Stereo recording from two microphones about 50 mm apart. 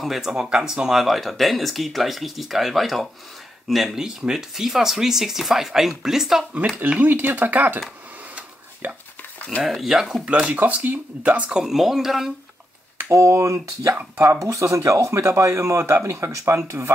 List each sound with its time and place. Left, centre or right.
0.0 s speech: centre
0.8 s speech: centre
7.0 s speech: right
8.8 s speech: right
9.6 s speech: centre
10.2 s speech: right
10.5 s speech: right
11.5 s speech: centre
13.1 s speech: right